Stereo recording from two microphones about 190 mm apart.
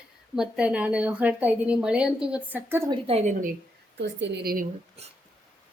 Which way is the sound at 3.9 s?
65° right (ahead or behind).